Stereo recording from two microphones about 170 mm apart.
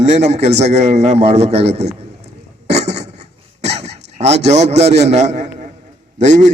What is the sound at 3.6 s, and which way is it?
A man's voice, 40° right (ahead or behind).